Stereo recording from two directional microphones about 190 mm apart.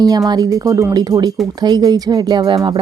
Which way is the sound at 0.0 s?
20° right (ahead or behind).